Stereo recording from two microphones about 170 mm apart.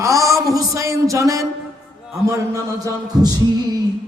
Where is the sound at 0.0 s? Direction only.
20° right (ahead or behind).